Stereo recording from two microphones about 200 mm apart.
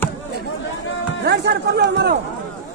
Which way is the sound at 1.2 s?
55° right (ahead or behind).